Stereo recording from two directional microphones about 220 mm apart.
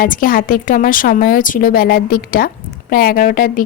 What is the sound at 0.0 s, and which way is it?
Speech, 40° left (ahead or behind).